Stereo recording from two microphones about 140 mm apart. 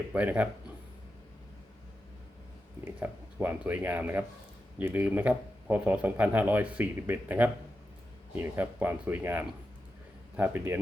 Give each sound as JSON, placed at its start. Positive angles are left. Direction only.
{"t": 0.1, "sound": "speech", "side_deg": -10}
{"t": 2.8, "sound": "speech", "side_deg": -15}